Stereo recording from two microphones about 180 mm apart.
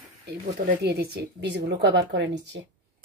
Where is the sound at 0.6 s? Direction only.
65° right (ahead or behind).